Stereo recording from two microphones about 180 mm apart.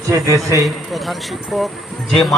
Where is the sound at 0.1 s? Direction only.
15° right (ahead or behind).